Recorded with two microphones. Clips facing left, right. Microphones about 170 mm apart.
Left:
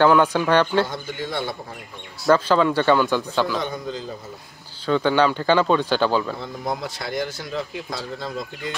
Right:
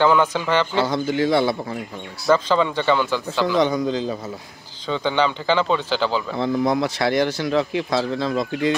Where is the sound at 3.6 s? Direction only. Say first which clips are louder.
Right 9 dB; 90° right.